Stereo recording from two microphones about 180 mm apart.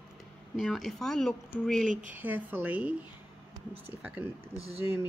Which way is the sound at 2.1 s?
10° right (ahead or behind).